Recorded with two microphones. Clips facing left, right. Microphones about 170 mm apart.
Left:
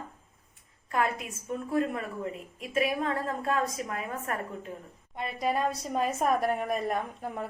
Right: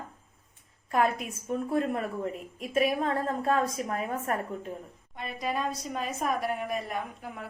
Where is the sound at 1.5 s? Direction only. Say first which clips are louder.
Right 1 dB; 40° right (ahead or behind).